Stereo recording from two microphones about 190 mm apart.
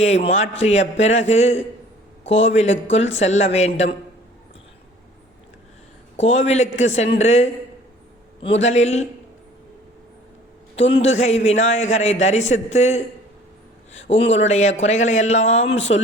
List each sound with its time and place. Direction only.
0.3 s a man's voice: 35° left (ahead or behind)
6.1 s a man's voice: 35° left (ahead or behind)
8.6 s a man's voice: 35° left (ahead or behind)
10.8 s a man's voice: 35° left (ahead or behind)
14.3 s a man's voice: 35° left (ahead or behind)